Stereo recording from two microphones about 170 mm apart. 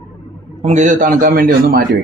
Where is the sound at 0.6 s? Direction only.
45° right (ahead or behind); by 1.8 s 60° right (ahead or behind).